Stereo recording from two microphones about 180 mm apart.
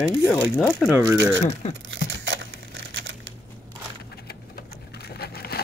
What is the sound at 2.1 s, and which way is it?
Camera, 90° right.